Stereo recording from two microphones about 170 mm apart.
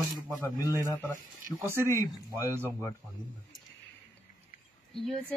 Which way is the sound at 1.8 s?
20° left (ahead or behind).